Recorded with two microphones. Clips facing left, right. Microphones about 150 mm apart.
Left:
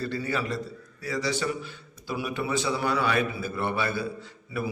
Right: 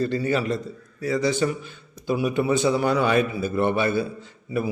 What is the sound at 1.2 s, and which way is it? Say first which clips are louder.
Speech: right 6 dB; 50° right (ahead or behind).